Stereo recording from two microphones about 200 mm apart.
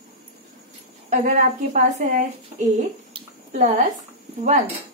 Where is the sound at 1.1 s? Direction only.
40° right (ahead or behind).